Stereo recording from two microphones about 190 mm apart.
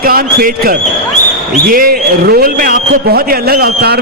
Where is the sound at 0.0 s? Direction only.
50° right (ahead or behind).